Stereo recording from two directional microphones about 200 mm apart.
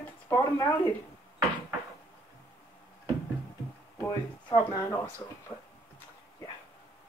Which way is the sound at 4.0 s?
10° left (ahead or behind).